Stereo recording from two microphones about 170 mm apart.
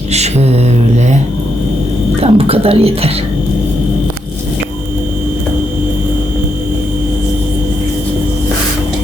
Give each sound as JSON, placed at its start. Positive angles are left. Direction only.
{"t": 0.1, "sound": "mantra", "side_deg": -40}
{"t": 2.2, "sound": "speech", "side_deg": -35}